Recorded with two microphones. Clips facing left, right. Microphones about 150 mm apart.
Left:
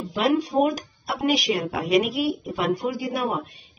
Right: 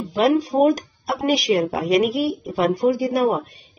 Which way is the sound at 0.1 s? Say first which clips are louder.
Right 4 dB; 40° right (ahead or behind).